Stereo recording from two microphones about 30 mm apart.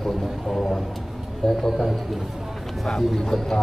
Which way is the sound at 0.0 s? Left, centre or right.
Centre.